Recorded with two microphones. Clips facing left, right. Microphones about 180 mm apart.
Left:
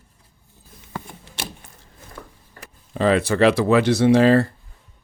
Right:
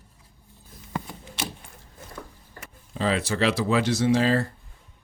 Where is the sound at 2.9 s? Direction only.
60° left (ahead or behind).